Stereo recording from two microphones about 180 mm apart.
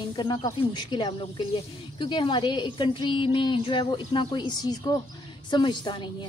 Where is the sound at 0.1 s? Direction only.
25° left (ahead or behind).